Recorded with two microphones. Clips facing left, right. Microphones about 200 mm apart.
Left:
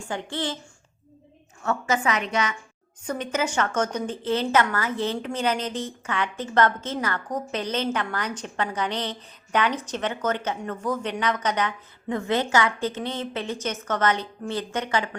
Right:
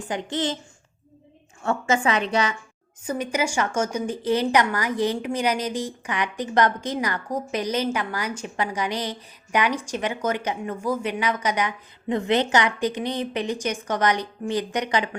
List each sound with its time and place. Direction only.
0.1 s a child's voice: 20° right (ahead or behind)
1.6 s a woman's voice: 30° right (ahead or behind)
3.0 s a woman's voice: 10° right (ahead or behind)